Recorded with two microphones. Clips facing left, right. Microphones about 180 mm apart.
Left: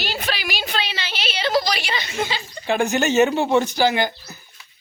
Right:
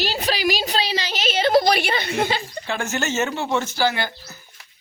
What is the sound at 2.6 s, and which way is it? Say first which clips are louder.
Speech: left 9 dB; 15° left (ahead or behind).